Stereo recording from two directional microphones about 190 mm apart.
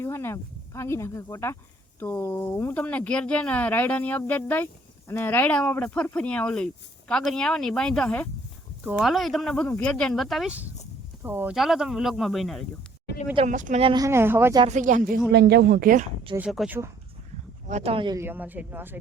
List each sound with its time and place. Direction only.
0.0 s speech: 15° left (ahead or behind); by 11.5 s 10° right (ahead or behind)
11.5 s speech: centre (ahead or behind)
13.3 s speech: 40° right (ahead or behind)
13.8 s speech: 20° right (ahead or behind)
14.7 s speech: 40° right (ahead or behind)
15.3 s speech: 60° right (ahead or behind)
15.7 s speech: 50° right (ahead or behind)
16.4 s speech: 5° right (ahead or behind)
17.7 s speech: 35° right (ahead or behind)
18.2 s speech: 10° right (ahead or behind)